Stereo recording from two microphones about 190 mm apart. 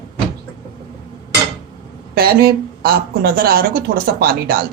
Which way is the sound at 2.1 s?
50° right (ahead or behind).